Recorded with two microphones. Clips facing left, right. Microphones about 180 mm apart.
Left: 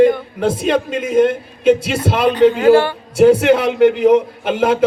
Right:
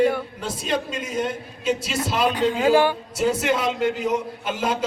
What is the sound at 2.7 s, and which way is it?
Speech, 15° right (ahead or behind).